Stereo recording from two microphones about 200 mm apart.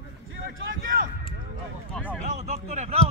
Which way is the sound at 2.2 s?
35° right (ahead or behind).